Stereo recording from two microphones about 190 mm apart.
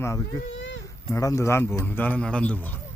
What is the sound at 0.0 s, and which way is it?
Speech, 15° left (ahead or behind).